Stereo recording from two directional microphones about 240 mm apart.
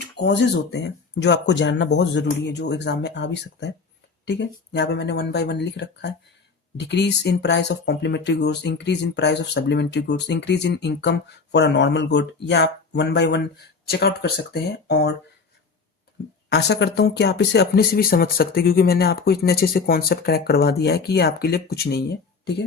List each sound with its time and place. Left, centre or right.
0.2 s speech: left
16.5 s speech: left